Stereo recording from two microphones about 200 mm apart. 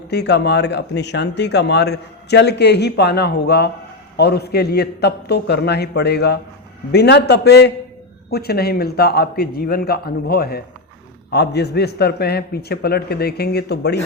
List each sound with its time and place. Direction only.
0.1 s a man's voice: 55° left (ahead or behind)